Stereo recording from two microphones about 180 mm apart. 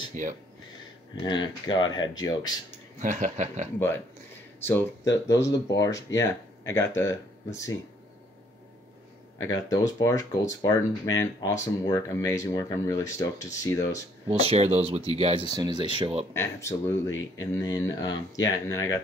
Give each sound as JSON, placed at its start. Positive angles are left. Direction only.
{"t": 0.1, "sound": "speech", "side_deg": -45}
{"t": 1.2, "sound": "speech", "side_deg": 25}
{"t": 3.0, "sound": "speech", "side_deg": -45}
{"t": 4.6, "sound": "speech", "side_deg": 15}
{"t": 9.7, "sound": "speech", "side_deg": 20}
{"t": 14.2, "sound": "speech", "side_deg": -35}
{"t": 15.4, "sound": "speech", "side_deg": -25}
{"t": 16.3, "sound": "speech", "side_deg": 15}